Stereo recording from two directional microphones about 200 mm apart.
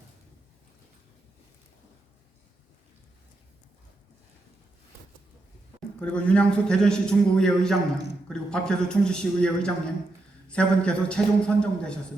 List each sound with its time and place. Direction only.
6.0 s a man's voice: 5° left (ahead or behind)